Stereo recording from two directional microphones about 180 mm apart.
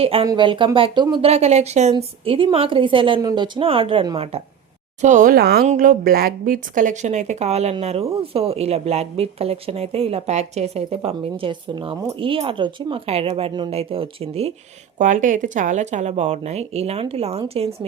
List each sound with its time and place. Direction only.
0.0 s a woman's voice: 30° right (ahead or behind)
4.9 s speech: 45° right (ahead or behind)
5.6 s speech: 50° right (ahead or behind)
14.9 s speech: 45° right (ahead or behind)